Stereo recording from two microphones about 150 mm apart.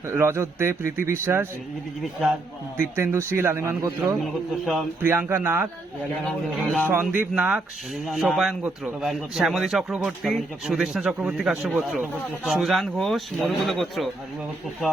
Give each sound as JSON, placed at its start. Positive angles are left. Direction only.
{"t": 0.1, "sound": "a man's voice", "side_deg": -15}
{"t": 2.9, "sound": "a man's voice", "side_deg": -15}
{"t": 4.2, "sound": "a man's voice", "side_deg": 0}
{"t": 5.0, "sound": "a man's voice", "side_deg": -15}
{"t": 6.2, "sound": "a man's voice", "side_deg": 5}
{"t": 7.0, "sound": "a man's voice", "side_deg": -10}